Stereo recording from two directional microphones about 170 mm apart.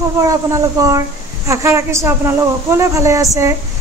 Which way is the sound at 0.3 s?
20° right (ahead or behind).